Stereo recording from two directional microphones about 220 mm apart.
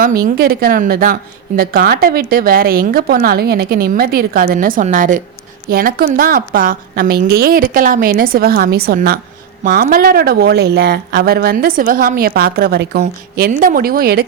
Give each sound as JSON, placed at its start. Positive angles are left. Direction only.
{"t": 0.2, "sound": "a woman's voice", "side_deg": -40}